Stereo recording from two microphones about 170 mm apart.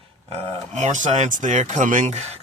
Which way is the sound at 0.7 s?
45° right (ahead or behind).